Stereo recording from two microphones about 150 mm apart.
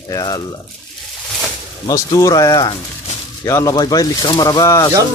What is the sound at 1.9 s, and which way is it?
Speech, 25° left (ahead or behind).